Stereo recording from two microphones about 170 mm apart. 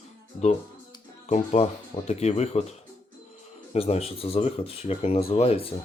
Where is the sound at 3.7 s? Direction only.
35° left (ahead or behind).